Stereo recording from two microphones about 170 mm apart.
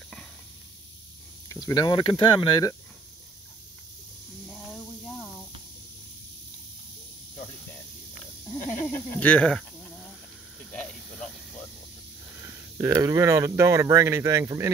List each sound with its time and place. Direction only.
1.5 s speech: 20° left (ahead or behind)
8.5 s a sound: 10° left (ahead or behind)
10.7 s snake: 5° left (ahead or behind)
12.4 s speech: 15° right (ahead or behind)